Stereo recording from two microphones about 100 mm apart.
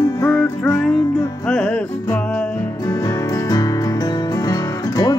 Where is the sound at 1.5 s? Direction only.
10° left (ahead or behind).